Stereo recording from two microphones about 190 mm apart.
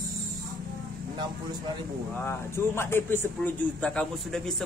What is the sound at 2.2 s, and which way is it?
A woman's voice, 15° left (ahead or behind).